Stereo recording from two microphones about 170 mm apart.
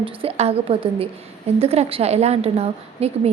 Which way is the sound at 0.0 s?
35° right (ahead or behind).